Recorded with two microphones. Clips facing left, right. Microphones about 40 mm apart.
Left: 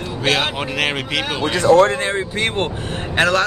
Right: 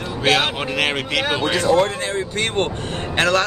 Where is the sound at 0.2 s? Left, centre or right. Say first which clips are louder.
Right 1 dB; centre.